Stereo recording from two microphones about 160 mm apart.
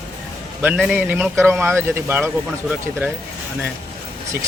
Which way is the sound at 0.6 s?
5° right (ahead or behind).